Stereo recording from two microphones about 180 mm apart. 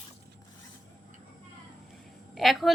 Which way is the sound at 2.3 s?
Centre (ahead or behind).